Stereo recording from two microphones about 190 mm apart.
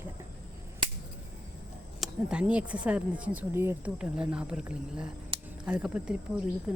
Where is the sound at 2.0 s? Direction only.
5° right (ahead or behind).